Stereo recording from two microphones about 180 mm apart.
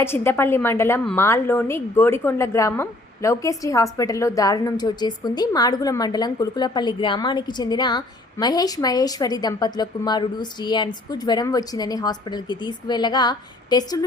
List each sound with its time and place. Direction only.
0.0 s a woman's voice: 15° left (ahead or behind)